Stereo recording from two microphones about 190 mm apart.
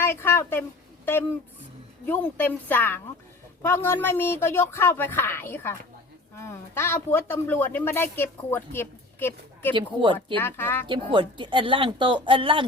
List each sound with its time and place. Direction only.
0.0 s a woman's voice: 10° left (ahead or behind)
2.0 s a man's voice: 10° left (ahead or behind)
9.7 s speech: 25° right (ahead or behind)
10.3 s a man's voice: 10° left (ahead or behind)
10.8 s speech: 25° right (ahead or behind)